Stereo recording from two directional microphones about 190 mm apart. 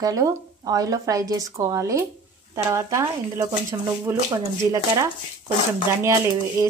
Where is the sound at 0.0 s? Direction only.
20° right (ahead or behind).